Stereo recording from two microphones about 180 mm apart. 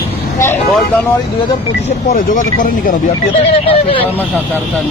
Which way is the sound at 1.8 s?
45° left (ahead or behind).